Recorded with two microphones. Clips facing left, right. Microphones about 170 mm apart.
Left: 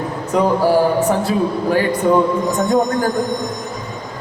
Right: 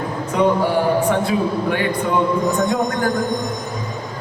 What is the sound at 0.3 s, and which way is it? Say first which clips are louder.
A man's voice: left 3 dB; 40° left (ahead or behind).